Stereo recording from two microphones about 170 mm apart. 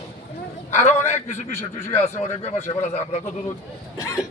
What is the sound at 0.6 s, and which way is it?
Speech, 45° left (ahead or behind).